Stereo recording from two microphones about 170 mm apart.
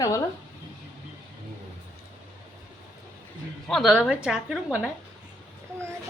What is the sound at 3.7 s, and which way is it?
A woman's voice, centre (ahead or behind).